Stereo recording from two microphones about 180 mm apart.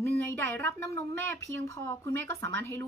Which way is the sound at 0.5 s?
15° left (ahead or behind).